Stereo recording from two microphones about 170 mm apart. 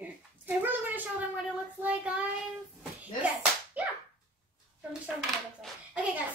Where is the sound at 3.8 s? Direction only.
10° right (ahead or behind).